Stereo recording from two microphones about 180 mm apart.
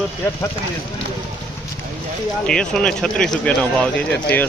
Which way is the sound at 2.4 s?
5° left (ahead or behind).